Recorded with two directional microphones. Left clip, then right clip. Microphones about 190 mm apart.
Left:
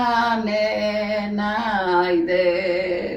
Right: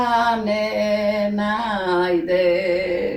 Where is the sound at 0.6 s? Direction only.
10° right (ahead or behind).